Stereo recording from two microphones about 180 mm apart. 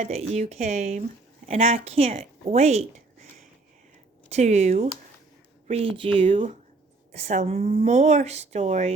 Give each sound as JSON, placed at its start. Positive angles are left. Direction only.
{"t": 0.0, "sound": "speech", "side_deg": -35}
{"t": 4.3, "sound": "speech", "side_deg": -40}